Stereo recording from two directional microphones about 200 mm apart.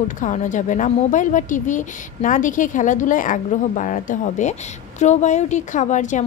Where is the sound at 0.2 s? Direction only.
40° left (ahead or behind).